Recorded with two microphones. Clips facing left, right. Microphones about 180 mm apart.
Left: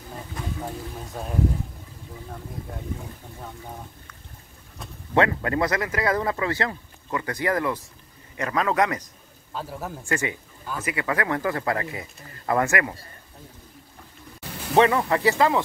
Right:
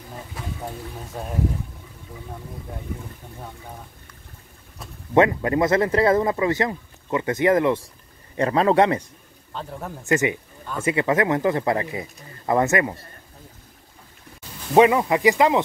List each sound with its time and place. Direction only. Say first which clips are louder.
5.1 s speech: right 4 dB; 20° right (ahead or behind)
9.5 s a man's voice: even; 5° left (ahead or behind)
10.0 s speech: right 8 dB; 20° right (ahead or behind)
14.7 s speech: right 3 dB; 15° right (ahead or behind)